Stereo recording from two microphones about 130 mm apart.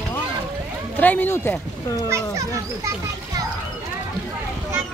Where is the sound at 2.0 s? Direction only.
25° right (ahead or behind).